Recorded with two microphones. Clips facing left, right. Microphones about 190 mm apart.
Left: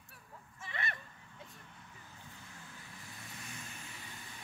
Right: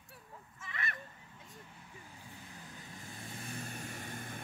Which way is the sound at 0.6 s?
30° left (ahead or behind).